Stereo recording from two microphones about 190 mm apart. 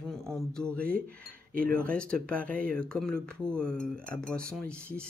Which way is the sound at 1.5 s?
50° right (ahead or behind).